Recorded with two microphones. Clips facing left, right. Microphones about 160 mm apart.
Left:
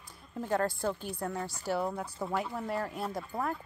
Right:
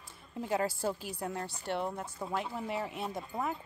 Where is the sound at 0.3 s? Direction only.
5° right (ahead or behind).